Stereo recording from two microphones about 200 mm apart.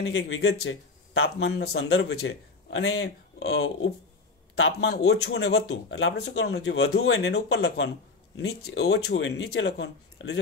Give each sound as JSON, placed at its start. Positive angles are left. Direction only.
{"t": 0.0, "sound": "speech", "side_deg": 85}
{"t": 1.2, "sound": "speech", "side_deg": 55}
{"t": 1.9, "sound": "speech", "side_deg": 75}
{"t": 9.5, "sound": "speech", "side_deg": 60}